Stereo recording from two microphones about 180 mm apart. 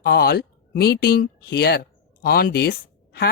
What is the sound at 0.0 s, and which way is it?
Speech, 55° left (ahead or behind).